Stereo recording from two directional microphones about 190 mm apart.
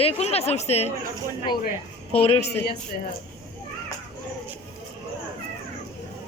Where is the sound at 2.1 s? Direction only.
35° left (ahead or behind).